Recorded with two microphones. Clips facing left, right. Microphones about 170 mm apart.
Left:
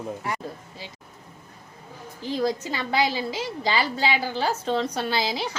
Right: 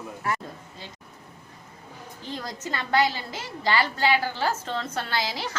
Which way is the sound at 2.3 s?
10° left (ahead or behind).